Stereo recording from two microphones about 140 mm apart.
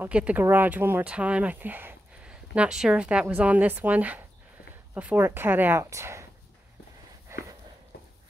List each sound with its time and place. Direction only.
0.0 s speech: 10° right (ahead or behind)
7.3 s walk: 20° right (ahead or behind)